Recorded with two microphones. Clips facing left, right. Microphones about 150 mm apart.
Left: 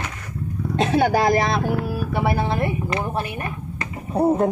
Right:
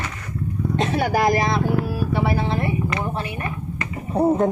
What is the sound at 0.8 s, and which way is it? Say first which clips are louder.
Speech: left 3 dB; 75° left (ahead or behind).